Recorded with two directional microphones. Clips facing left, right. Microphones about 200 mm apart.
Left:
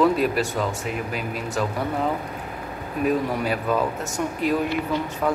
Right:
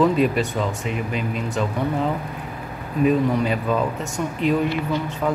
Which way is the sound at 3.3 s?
5° left (ahead or behind).